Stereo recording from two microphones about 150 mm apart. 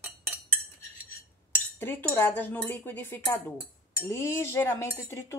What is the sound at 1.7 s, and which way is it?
Cutlery, 15° left (ahead or behind).